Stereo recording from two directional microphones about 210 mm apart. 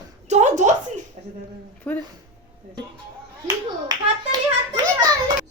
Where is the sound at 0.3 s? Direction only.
35° right (ahead or behind).